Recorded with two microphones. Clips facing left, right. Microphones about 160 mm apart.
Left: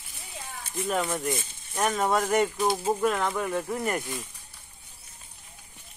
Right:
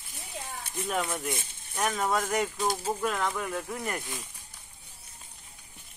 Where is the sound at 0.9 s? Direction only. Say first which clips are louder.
Left 3 dB; centre (ahead or behind).